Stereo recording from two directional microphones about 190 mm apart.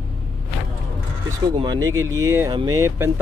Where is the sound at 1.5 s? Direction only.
20° right (ahead or behind).